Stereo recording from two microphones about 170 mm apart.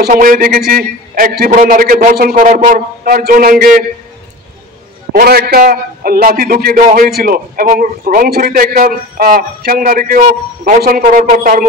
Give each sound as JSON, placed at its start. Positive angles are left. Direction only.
{"t": 0.0, "sound": "a man's voice", "side_deg": -55}
{"t": 5.1, "sound": "a man's voice", "side_deg": -65}